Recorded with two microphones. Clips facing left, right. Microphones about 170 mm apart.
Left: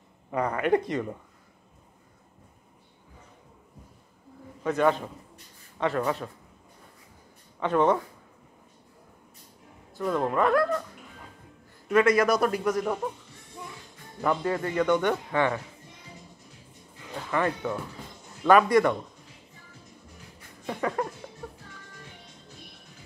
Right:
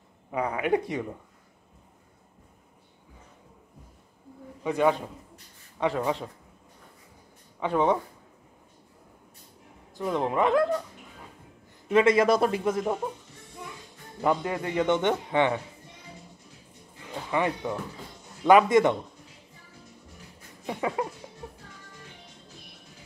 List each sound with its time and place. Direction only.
0.3 s speech: 5° right (ahead or behind)
4.6 s speech: 15° right (ahead or behind)
7.6 s speech: 10° right (ahead or behind)
9.9 s speech: 20° right (ahead or behind)
11.9 s speech: 25° right (ahead or behind)
14.2 s speech: 15° right (ahead or behind)
17.1 s speech: 15° right (ahead or behind)
20.6 s speech: 15° right (ahead or behind)